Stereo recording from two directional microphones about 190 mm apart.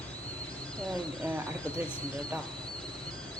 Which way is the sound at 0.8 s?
5° left (ahead or behind).